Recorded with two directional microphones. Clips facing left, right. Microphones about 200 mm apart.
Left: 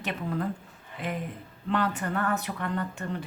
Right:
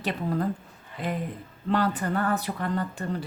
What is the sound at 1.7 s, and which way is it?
Speech, 35° right (ahead or behind).